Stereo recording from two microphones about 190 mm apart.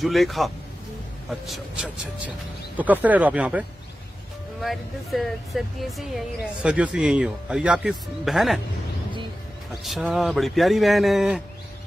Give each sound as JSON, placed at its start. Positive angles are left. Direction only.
{"t": 0.0, "sound": "speech", "side_deg": 0}
{"t": 1.5, "sound": "speech", "side_deg": -5}
{"t": 9.8, "sound": "speech", "side_deg": 0}